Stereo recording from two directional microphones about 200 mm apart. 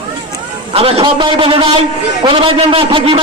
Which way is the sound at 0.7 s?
30° right (ahead or behind).